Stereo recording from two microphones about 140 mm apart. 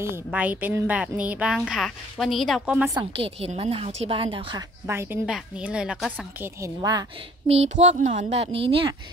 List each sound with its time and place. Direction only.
0.0 s a woman's voice: 15° right (ahead or behind)
3.0 s a woman's voice: 45° right (ahead or behind)
4.8 s a woman's voice: 15° right (ahead or behind)
5.2 s a woman's voice: 5° right (ahead or behind)
6.1 s a woman's voice: 20° right (ahead or behind)
7.4 s speech: 50° right (ahead or behind)
8.5 s a woman's voice: 40° right (ahead or behind)